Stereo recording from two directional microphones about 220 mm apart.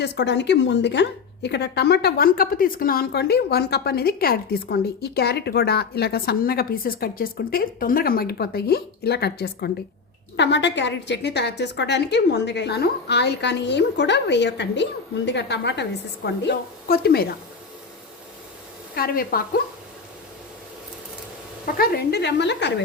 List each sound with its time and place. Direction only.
0.0 s a woman's voice: 50° left (ahead or behind)
18.9 s speech: 40° left (ahead or behind)
21.8 s a woman's voice: 50° left (ahead or behind)